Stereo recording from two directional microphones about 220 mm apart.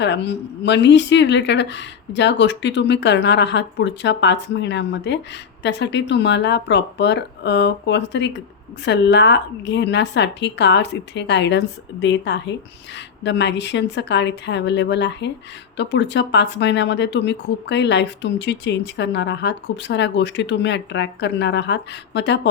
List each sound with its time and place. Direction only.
0.0 s speech: 50° left (ahead or behind)